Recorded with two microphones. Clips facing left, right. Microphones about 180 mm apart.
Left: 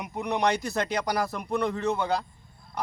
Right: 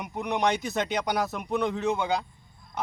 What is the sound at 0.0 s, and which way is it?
Speech, centre (ahead or behind).